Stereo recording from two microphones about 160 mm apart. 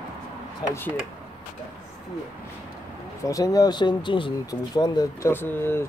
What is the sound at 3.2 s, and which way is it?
Speech, 20° left (ahead or behind).